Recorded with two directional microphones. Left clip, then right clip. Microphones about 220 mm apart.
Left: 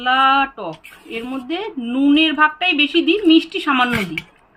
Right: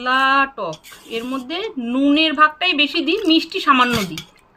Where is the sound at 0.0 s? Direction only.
50° right (ahead or behind).